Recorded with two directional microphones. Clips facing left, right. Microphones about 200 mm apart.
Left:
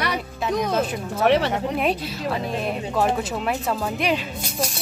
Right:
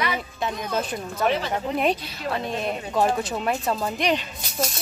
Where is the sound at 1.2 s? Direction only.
70° left (ahead or behind).